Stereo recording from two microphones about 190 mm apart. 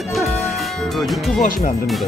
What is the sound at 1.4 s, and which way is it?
Speech, 40° left (ahead or behind).